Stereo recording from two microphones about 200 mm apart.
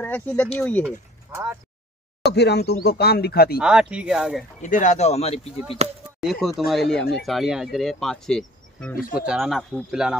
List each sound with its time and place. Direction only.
0.0 s speech: 10° left (ahead or behind)
1.3 s speech: 15° right (ahead or behind)
2.3 s speech: 55° left (ahead or behind)
3.5 s speech: 5° right (ahead or behind)
4.6 s speech: 40° left (ahead or behind)
5.8 s speech: 35° right (ahead or behind)
6.2 s speech: centre (ahead or behind)